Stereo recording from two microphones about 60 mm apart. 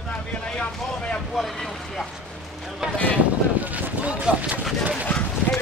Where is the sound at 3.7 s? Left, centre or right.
Right.